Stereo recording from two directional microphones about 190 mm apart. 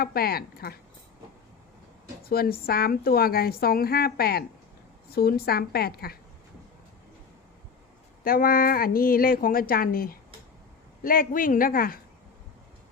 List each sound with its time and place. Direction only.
0.0 s a woman's voice: 55° left (ahead or behind)
2.2 s a woman's voice: 50° left (ahead or behind)
8.2 s a woman's voice: 50° left (ahead or behind)